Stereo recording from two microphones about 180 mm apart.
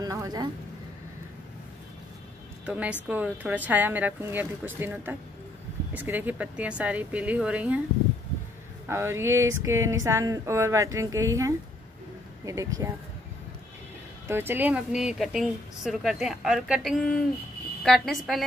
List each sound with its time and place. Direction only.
0.0 s a sound: 20° right (ahead or behind)
2.6 s a woman's voice: 5° right (ahead or behind)
8.8 s a woman's voice: 15° right (ahead or behind)
14.2 s speech: 10° right (ahead or behind)